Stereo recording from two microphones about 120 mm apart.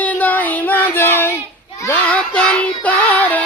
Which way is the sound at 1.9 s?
10° left (ahead or behind).